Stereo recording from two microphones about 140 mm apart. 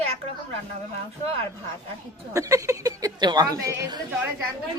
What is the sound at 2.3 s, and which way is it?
A woman's voice, 20° right (ahead or behind).